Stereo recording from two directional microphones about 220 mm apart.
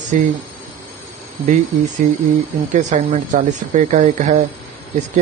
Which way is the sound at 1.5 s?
35° right (ahead or behind).